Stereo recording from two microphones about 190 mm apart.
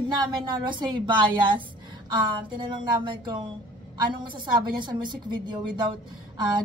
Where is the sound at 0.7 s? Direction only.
25° right (ahead or behind).